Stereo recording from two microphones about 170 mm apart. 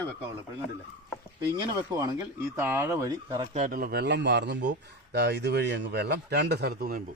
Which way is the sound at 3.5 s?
50° right (ahead or behind).